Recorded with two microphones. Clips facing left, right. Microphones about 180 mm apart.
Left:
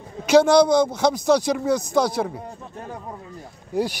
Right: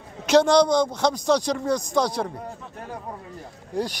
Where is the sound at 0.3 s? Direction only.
5° left (ahead or behind).